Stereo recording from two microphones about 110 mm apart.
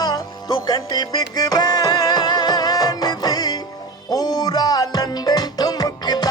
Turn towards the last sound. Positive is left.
turn(degrees=40)  # may be behind; listen again after turning